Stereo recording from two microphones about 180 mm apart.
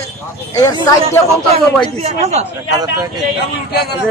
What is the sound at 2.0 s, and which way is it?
Speech, 40° right (ahead or behind).